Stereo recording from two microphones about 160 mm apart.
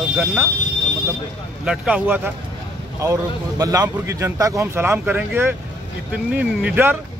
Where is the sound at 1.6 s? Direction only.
5° right (ahead or behind).